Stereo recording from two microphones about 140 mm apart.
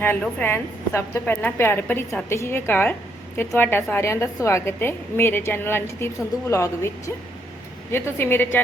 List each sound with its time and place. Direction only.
0.0 s a woman's voice: 10° left (ahead or behind)